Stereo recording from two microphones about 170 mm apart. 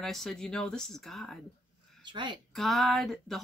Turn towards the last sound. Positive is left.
turn(degrees=0)  # may be behind; listen again after turning